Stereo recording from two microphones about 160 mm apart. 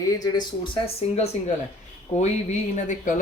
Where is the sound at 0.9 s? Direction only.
40° left (ahead or behind).